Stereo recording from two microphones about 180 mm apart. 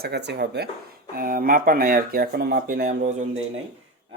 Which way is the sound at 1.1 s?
50° right (ahead or behind).